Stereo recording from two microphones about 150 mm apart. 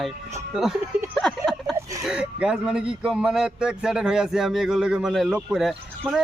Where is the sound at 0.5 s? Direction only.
Centre (ahead or behind).